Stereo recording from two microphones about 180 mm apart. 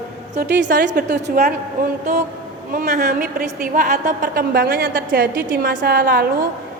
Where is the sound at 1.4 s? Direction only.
55° right (ahead or behind).